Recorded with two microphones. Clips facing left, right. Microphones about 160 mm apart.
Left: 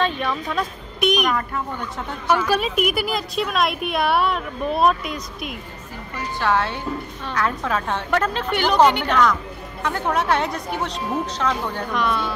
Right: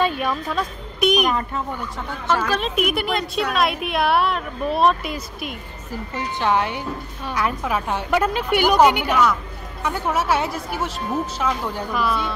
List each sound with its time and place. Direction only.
0.0 s speech: 10° right (ahead or behind)
6.1 s a woman's voice: 20° right (ahead or behind)